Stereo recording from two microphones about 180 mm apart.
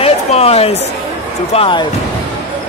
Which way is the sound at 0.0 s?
35° left (ahead or behind).